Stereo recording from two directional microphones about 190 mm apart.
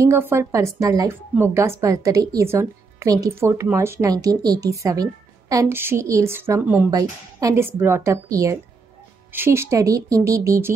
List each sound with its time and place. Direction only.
0.0 s a woman's voice: 15° right (ahead or behind)